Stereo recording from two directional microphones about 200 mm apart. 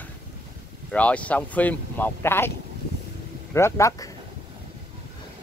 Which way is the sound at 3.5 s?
15° left (ahead or behind).